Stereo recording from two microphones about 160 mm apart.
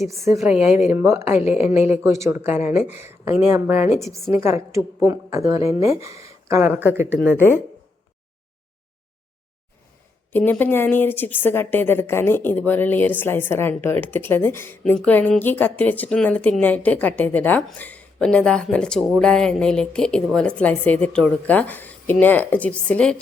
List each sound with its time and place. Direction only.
0.3 s a woman's voice: 5° right (ahead or behind)
0.9 s a woman's voice: 15° right (ahead or behind)
10.3 s a woman's voice: 10° left (ahead or behind)